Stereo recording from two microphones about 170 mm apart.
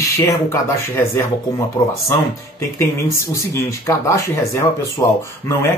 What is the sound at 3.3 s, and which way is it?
Speech, 15° left (ahead or behind).